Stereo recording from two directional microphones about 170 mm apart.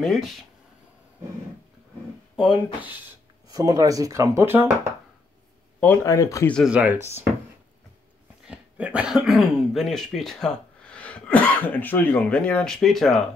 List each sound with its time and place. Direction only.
0.0 s speech: centre (ahead or behind)
2.3 s speech: 5° right (ahead or behind)
3.4 s speech: 20° right (ahead or behind)
6.0 s speech: 20° left (ahead or behind)
6.5 s speech: 5° right (ahead or behind)
8.5 s speech: 5° right (ahead or behind)